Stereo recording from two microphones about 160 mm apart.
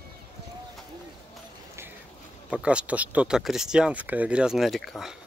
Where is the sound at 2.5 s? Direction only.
5° right (ahead or behind).